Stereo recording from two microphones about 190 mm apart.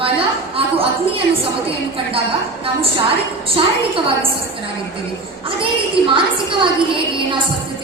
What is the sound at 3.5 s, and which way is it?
Speech, 30° right (ahead or behind).